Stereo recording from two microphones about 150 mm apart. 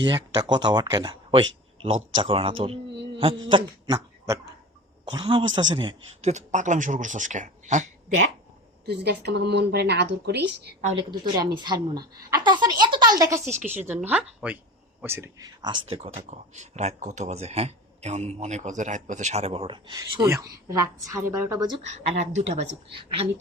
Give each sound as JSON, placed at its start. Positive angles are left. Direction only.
{"t": 0.0, "sound": "speech", "side_deg": -30}
{"t": 3.2, "sound": "a sound", "side_deg": -35}
{"t": 5.0, "sound": "speech", "side_deg": -30}
{"t": 6.2, "sound": "speech", "side_deg": -55}
{"t": 8.9, "sound": "a woman's voice", "side_deg": -90}
{"t": 11.5, "sound": "a woman's voice", "side_deg": -30}
{"t": 15.6, "sound": "a woman's voice", "side_deg": -35}
{"t": 21.9, "sound": "speech", "side_deg": -50}
{"t": 23.0, "sound": "speech", "side_deg": -40}